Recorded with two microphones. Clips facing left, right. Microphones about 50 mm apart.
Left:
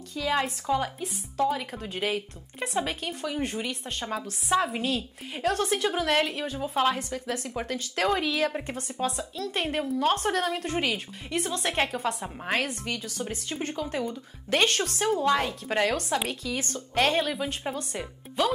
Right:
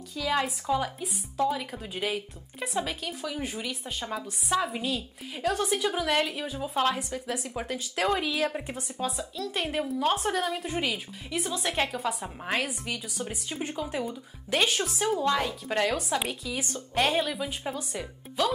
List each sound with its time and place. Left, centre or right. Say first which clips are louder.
0.1 s a woman's voice: left 1 dB; centre
9.5 s speech: left 1 dB; centre
9.8 s a woman's voice: left 3 dB; centre
11.6 s speech: left 1 dB; centre
12.1 s a woman's voice: left 1 dB; centre
15.2 s speech: left 2 dB; centre
16.0 s a woman's voice: left 1 dB; centre
17.9 s speech: left 1 dB; left